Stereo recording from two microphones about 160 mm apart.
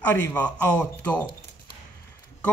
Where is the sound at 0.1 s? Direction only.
10° left (ahead or behind).